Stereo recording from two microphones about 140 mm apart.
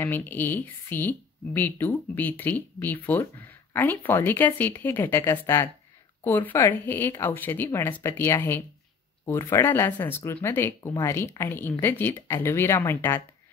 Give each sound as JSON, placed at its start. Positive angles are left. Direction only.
{"t": 0.0, "sound": "speech", "side_deg": 15}